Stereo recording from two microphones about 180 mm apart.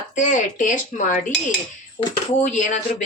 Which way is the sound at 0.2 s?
45° left (ahead or behind).